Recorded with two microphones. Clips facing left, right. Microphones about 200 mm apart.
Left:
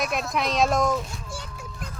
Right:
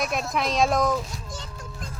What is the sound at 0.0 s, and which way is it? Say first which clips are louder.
Speech: even; centre (ahead or behind).